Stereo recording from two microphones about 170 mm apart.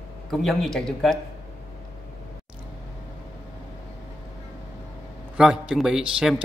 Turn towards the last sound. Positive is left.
turn(degrees=-5)  # may be behind; listen again after turning